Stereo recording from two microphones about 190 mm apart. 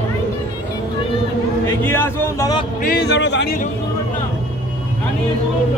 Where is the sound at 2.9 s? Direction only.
60° left (ahead or behind).